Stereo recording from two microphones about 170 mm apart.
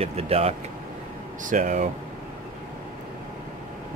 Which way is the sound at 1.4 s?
50° right (ahead or behind).